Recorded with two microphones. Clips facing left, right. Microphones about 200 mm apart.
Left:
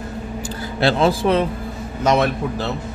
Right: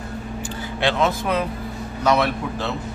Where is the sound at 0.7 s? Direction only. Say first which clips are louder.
Left 4 dB; 35° left (ahead or behind).